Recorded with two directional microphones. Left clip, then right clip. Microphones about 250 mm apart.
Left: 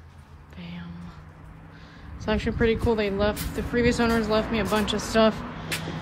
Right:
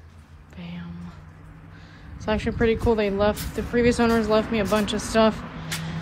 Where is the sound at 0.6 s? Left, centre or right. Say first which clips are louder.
Right 2 dB; centre.